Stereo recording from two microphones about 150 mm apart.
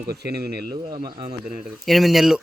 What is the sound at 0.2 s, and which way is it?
Speech, 90° right.